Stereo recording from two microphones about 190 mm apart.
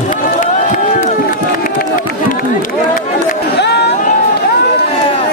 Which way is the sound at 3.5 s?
60° left (ahead or behind).